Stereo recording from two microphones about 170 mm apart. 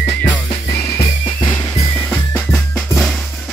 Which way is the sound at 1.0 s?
20° left (ahead or behind).